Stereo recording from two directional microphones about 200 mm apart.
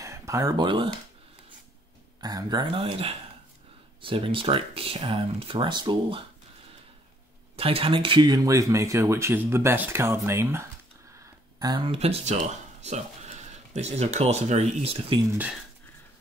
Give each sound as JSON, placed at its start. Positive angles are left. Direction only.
{"t": 0.0, "sound": "speech", "side_deg": -15}
{"t": 2.2, "sound": "speech", "side_deg": -20}
{"t": 7.5, "sound": "speech", "side_deg": -30}
{"t": 11.6, "sound": "speech", "side_deg": -25}